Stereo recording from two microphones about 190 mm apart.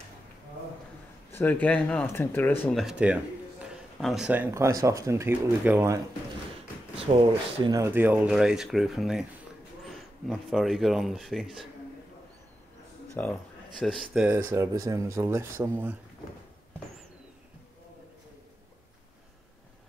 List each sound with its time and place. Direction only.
1.3 s speech: 10° left (ahead or behind)
2.8 s speech: 5° right (ahead or behind)
7.1 s speech: 30° right (ahead or behind)
7.6 s speech: 15° right (ahead or behind)
10.2 s speech: centre (ahead or behind)
13.1 s speech: 10° left (ahead or behind)
13.7 s speech: centre (ahead or behind)